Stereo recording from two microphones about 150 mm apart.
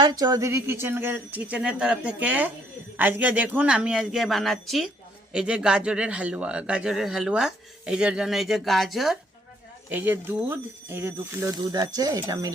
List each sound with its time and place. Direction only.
0.0 s a man's voice: 25° right (ahead or behind); by 9.1 s centre (ahead or behind)
9.9 s speech: 15° right (ahead or behind)
11.5 s speech: 25° right (ahead or behind)